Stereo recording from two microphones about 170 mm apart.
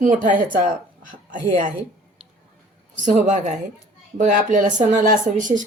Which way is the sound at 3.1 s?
45° right (ahead or behind).